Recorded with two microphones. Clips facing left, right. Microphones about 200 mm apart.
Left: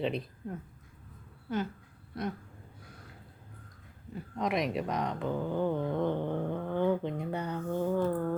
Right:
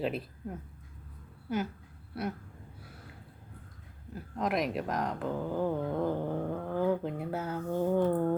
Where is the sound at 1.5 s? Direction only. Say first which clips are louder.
Even; 10° right (ahead or behind).